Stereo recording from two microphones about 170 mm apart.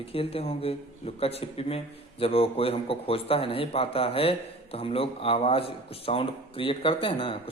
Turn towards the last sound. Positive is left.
turn(degrees=30)  # may be behind; listen again after turning